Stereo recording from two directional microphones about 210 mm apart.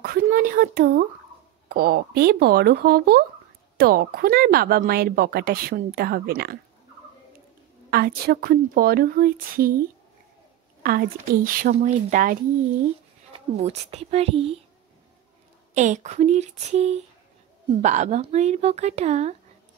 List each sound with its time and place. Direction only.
0.0 s speech: 45° right (ahead or behind)
7.9 s speech: 45° right (ahead or behind); by 14.6 s 25° right (ahead or behind)
15.7 s speech: 35° right (ahead or behind)